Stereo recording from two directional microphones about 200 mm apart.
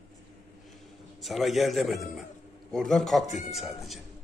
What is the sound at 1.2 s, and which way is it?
A man's voice, centre (ahead or behind).